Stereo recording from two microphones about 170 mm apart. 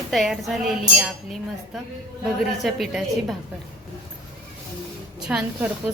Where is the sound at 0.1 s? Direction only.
Centre (ahead or behind).